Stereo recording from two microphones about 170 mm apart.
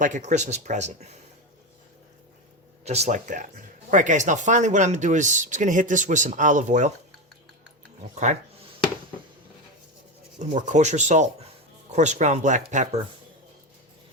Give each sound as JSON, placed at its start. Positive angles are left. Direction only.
{"t": 0.0, "sound": "speech", "side_deg": -50}
{"t": 2.8, "sound": "speech", "side_deg": -40}
{"t": 10.3, "sound": "speech", "side_deg": -45}